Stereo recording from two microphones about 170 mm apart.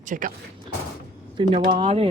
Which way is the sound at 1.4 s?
30° right (ahead or behind).